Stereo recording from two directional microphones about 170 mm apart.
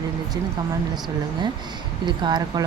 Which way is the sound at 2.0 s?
25° right (ahead or behind).